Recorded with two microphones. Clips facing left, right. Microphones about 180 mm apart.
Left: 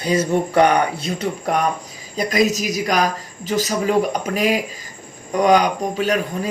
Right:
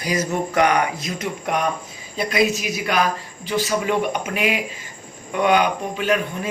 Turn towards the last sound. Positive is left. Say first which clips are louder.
# left 1 dB
turn(degrees=35)  # may be behind; listen again after turning